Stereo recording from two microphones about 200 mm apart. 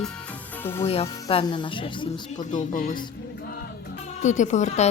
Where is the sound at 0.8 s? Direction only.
30° left (ahead or behind).